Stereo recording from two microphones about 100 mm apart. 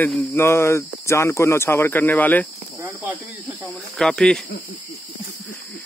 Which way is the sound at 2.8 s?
20° right (ahead or behind).